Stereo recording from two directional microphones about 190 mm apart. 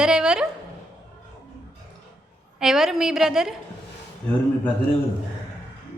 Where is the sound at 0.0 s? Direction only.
5° right (ahead or behind).